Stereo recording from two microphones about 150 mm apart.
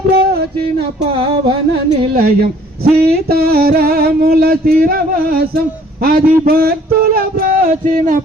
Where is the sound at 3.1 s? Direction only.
90° right.